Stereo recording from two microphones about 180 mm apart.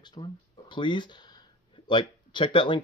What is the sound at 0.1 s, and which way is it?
Speech, 25° left (ahead or behind).